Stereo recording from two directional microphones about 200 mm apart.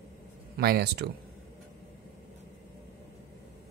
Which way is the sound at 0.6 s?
50° right (ahead or behind).